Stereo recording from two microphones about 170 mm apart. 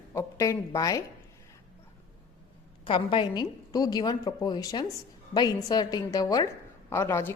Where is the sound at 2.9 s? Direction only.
30° left (ahead or behind).